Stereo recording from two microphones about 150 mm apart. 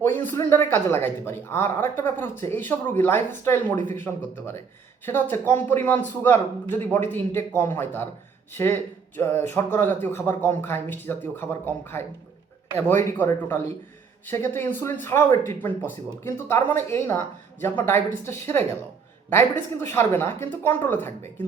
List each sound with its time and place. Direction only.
0.0 s speech: 15° left (ahead or behind)